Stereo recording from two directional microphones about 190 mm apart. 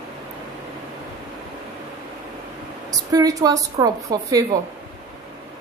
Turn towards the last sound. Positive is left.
turn(degrees=-20)  # may be behind; listen again after turning